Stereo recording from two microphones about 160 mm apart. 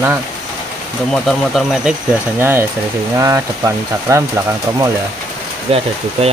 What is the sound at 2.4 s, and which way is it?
Speech, 15° right (ahead or behind).